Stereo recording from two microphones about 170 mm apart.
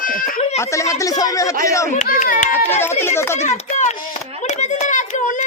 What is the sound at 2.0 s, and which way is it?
Speech, 55° left (ahead or behind).